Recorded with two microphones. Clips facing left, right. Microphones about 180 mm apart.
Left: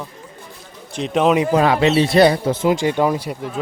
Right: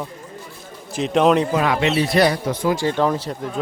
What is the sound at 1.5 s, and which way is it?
Speech, 35° left (ahead or behind).